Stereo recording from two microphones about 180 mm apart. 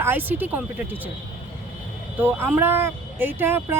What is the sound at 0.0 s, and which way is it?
Speech, 10° right (ahead or behind).